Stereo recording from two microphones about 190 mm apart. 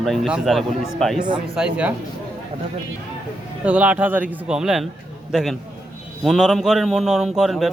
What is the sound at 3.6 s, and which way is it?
Speech, 5° right (ahead or behind).